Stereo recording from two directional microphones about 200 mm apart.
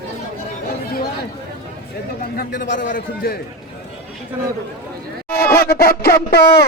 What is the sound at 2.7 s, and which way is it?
Speech, 40° left (ahead or behind).